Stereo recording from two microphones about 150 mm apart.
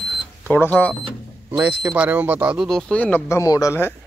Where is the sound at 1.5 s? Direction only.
15° right (ahead or behind).